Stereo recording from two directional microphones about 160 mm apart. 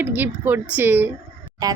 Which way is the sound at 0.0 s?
10° right (ahead or behind).